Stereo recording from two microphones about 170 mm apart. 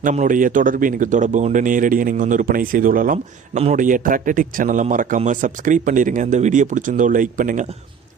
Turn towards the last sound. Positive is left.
turn(degrees=-50)  # may be behind; listen again after turning